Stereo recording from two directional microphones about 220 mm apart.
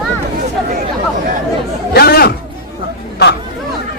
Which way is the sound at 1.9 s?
45° left (ahead or behind).